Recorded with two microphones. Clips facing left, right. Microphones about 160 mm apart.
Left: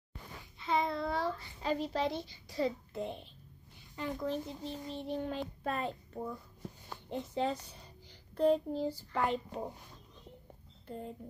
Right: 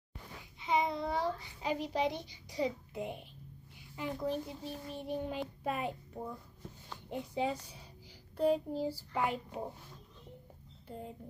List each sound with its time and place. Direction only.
0.6 s a sound: 15° right (ahead or behind)
3.9 s child singing: 10° right (ahead or behind)
10.9 s speech: 5° right (ahead or behind)